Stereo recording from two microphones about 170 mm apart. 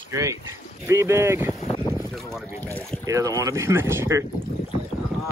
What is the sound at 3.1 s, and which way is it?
Speech, 20° right (ahead or behind).